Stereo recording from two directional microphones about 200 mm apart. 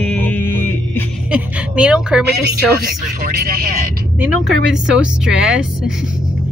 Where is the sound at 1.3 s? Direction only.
5° right (ahead or behind).